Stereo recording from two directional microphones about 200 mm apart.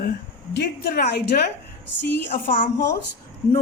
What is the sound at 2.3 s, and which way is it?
Speech, 40° left (ahead or behind).